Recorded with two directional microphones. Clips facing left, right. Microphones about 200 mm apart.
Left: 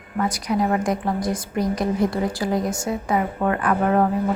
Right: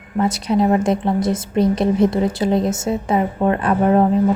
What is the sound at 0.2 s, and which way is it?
A woman's voice, 25° right (ahead or behind).